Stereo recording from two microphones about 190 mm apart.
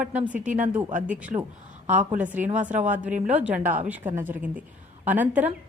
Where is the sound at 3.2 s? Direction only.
5° right (ahead or behind).